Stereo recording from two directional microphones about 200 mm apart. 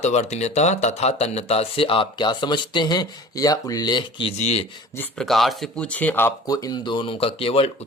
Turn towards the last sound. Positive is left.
turn(degrees=30)  # may be behind; listen again after turning